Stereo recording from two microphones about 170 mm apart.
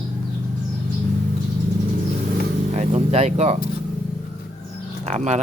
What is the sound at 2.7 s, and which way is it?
Speech, 40° right (ahead or behind).